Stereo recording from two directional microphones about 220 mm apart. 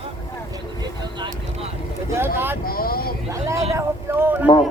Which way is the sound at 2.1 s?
10° right (ahead or behind).